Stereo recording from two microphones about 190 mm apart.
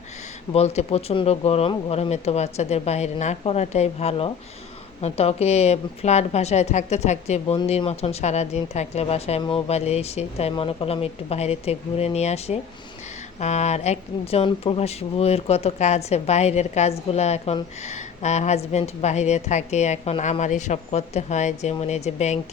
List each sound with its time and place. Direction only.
0.5 s speech: 35° left (ahead or behind)